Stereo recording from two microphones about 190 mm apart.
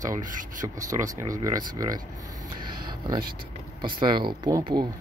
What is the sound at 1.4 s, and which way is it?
Speech, 20° right (ahead or behind).